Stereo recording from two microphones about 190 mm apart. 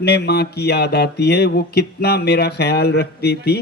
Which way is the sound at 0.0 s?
60° left (ahead or behind).